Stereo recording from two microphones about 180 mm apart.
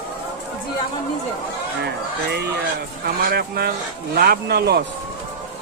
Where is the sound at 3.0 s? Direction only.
60° right (ahead or behind).